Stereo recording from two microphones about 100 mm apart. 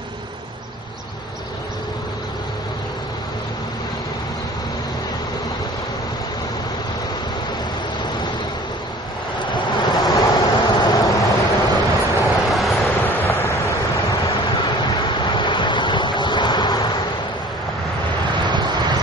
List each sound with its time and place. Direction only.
9.6 s waves: 50° left (ahead or behind)
10.9 s vehicle: 35° left (ahead or behind)
12.3 s vehicle: centre (ahead or behind)
13.0 s waves: 25° left (ahead or behind)
14.8 s vehicle: 50° left (ahead or behind)
18.5 s vehicle: 45° right (ahead or behind)